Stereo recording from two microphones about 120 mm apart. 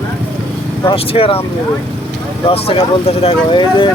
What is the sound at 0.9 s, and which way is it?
Speech, 50° left (ahead or behind).